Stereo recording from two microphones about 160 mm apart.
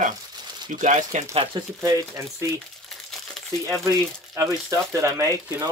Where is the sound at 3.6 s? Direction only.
20° right (ahead or behind).